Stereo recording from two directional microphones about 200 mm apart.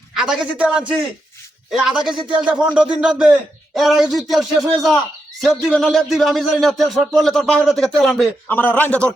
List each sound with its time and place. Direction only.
0.1 s speech: centre (ahead or behind)